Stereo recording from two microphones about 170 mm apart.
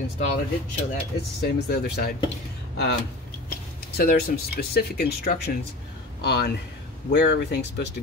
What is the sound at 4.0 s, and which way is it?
Speech, 65° left (ahead or behind).